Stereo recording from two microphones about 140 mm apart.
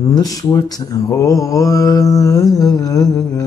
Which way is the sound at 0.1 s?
25° left (ahead or behind).